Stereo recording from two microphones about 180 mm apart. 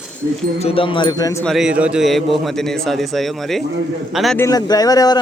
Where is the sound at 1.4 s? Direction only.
Centre (ahead or behind).